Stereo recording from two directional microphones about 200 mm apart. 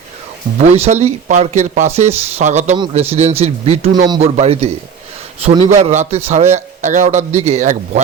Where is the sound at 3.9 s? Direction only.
20° right (ahead or behind).